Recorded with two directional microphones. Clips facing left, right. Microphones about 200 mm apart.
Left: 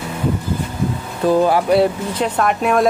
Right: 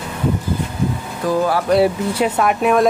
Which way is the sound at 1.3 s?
20° left (ahead or behind).